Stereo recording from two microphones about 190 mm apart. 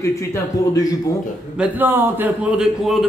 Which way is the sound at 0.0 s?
15° left (ahead or behind).